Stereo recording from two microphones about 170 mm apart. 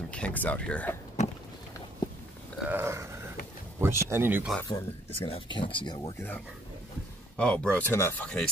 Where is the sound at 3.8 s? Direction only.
15° right (ahead or behind).